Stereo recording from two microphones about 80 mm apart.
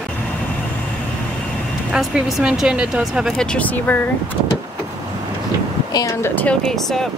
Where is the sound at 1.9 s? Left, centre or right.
Centre.